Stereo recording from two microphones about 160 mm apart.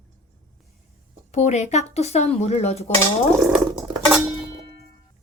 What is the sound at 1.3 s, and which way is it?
Speech, 45° left (ahead or behind).